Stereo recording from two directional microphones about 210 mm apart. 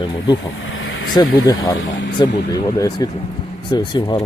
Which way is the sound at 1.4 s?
20° left (ahead or behind).